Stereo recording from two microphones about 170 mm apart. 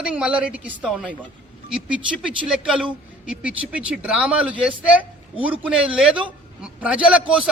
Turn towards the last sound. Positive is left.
turn(degrees=-5)  # may be behind; listen again after turning